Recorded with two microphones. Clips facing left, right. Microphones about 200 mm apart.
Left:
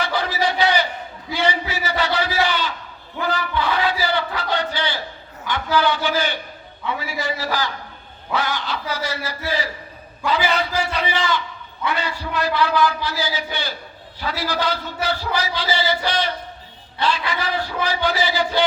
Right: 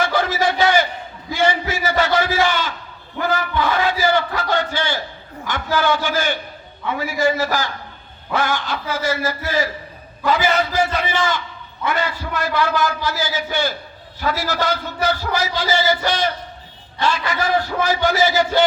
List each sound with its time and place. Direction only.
0.0 s battle cry: 45° right (ahead or behind)
1.3 s a sound: 45° right (ahead or behind)
5.5 s a man's voice: 45° right (ahead or behind)